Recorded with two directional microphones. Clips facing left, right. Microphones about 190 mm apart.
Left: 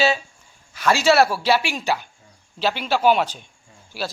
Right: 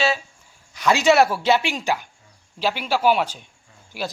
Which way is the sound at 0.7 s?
20° right (ahead or behind).